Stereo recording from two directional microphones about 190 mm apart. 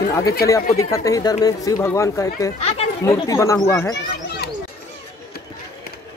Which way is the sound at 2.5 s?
35° left (ahead or behind).